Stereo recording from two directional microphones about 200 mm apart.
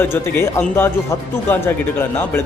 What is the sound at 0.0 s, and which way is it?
Speech, 10° left (ahead or behind).